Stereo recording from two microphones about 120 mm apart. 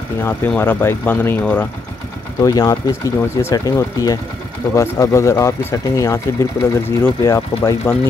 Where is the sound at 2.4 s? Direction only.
30° left (ahead or behind).